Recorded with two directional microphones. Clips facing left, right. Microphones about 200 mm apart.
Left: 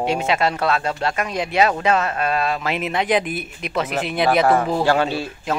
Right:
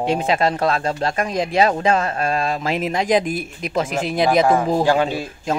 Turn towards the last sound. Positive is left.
turn(degrees=-15)  # may be behind; listen again after turning